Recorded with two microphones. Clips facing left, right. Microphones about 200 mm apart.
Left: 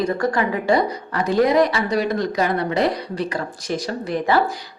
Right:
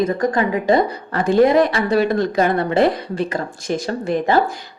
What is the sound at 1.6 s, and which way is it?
Speech, 55° right (ahead or behind).